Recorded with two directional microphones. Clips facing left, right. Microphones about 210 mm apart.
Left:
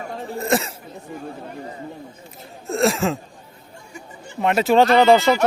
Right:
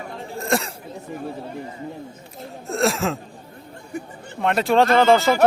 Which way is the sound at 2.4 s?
Centre (ahead or behind).